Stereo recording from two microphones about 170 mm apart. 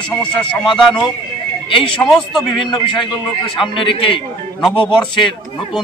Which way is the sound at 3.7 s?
30° left (ahead or behind).